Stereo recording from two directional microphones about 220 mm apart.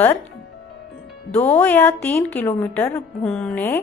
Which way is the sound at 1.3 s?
10° left (ahead or behind).